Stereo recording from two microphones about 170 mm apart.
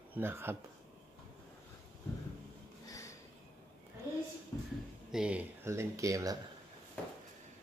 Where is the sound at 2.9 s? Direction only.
20° left (ahead or behind).